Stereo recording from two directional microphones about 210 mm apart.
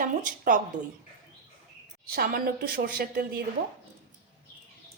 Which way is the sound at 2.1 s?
45° right (ahead or behind).